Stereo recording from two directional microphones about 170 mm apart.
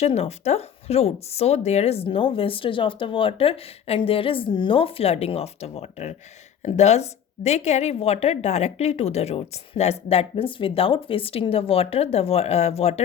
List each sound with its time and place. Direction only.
0.0 s a woman's voice: 40° left (ahead or behind)